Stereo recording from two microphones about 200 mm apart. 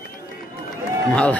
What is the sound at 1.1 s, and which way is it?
Speech, 5° left (ahead or behind).